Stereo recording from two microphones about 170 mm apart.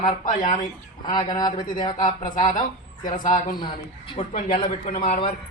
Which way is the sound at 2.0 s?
50° left (ahead or behind).